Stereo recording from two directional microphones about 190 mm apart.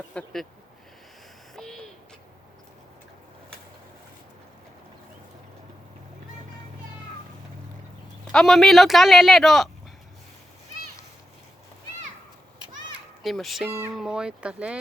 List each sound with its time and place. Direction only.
0.1 s speech: 5° left (ahead or behind)
1.5 s owl: centre (ahead or behind)
8.3 s speech: 5° left (ahead or behind)
13.2 s speech: centre (ahead or behind)
13.7 s a sound: 10° right (ahead or behind)
13.9 s speech: 5° right (ahead or behind)